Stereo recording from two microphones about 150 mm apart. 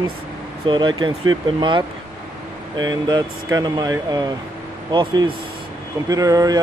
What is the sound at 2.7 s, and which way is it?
Speech, 30° right (ahead or behind).